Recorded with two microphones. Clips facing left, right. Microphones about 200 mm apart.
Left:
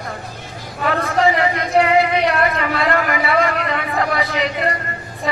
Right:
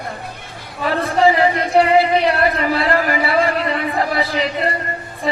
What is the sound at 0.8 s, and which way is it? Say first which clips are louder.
Speech: right 2 dB; 30° right (ahead or behind).